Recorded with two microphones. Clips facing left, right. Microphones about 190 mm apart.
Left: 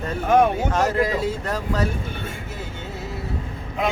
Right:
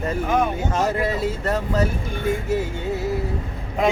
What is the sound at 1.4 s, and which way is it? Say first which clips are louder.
Speech: right 3 dB; 5° right (ahead or behind).